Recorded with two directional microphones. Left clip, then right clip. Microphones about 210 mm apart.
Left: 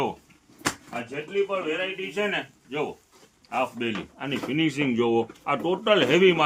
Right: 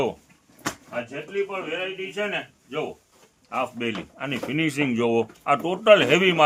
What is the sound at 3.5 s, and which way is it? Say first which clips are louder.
Speech: even; 30° right (ahead or behind).